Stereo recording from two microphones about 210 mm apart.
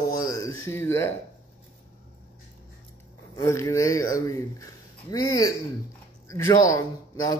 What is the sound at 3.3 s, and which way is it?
A man's voice, 15° left (ahead or behind).